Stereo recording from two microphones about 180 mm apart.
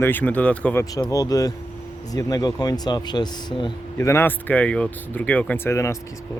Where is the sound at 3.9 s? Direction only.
15° left (ahead or behind).